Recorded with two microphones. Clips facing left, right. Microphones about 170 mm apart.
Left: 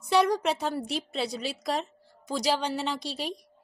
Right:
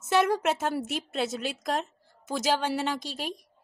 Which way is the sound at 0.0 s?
5° right (ahead or behind).